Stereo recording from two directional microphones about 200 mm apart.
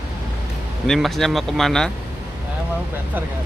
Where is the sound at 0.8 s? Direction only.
Centre (ahead or behind).